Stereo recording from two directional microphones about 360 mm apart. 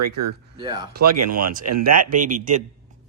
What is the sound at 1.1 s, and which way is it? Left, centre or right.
Speech, right.